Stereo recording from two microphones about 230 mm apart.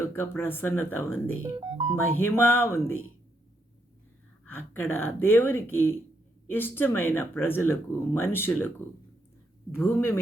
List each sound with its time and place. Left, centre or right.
0.0 s speech: centre
1.5 s speech: right
2.1 s speech: centre
4.5 s speech: centre
9.7 s speech: centre